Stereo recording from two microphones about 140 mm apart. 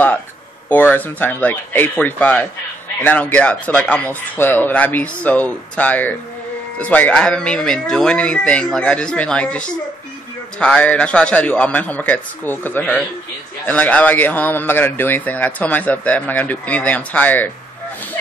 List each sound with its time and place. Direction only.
0.7 s a man's voice: 10° left (ahead or behind)